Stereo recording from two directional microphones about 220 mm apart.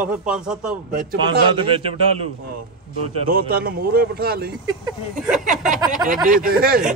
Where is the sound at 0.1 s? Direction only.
5° right (ahead or behind).